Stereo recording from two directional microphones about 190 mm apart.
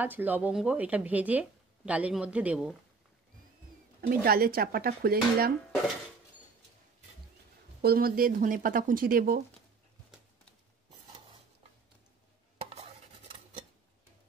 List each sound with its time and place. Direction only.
0.0 s speech: 10° right (ahead or behind)
4.1 s speech: 50° right (ahead or behind)
7.8 s speech: 50° right (ahead or behind)